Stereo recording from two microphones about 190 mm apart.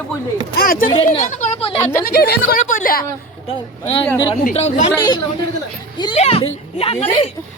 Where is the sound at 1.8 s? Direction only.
10° left (ahead or behind).